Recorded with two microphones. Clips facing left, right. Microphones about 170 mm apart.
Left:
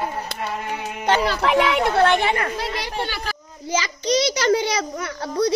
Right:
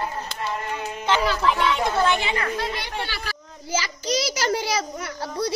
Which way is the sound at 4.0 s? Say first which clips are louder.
Left 6 dB; 5° right (ahead or behind).